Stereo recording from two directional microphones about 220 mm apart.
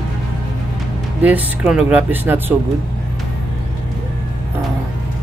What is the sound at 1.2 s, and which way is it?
Speech, 5° right (ahead or behind).